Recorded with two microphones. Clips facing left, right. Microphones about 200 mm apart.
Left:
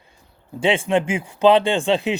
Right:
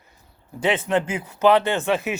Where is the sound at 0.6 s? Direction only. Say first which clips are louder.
Left 3 dB; 25° left (ahead or behind).